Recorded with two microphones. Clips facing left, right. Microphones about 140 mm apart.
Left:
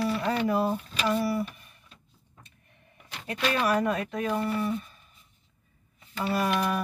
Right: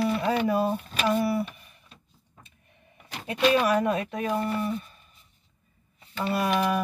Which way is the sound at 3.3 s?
20° right (ahead or behind).